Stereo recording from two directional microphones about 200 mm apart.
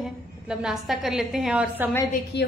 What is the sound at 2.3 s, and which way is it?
Speech, 60° left (ahead or behind).